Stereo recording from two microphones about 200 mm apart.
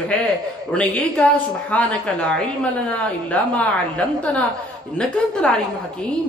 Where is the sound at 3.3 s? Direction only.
5° left (ahead or behind).